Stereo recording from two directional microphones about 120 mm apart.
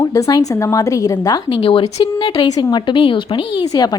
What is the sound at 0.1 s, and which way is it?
A woman's voice, 30° left (ahead or behind).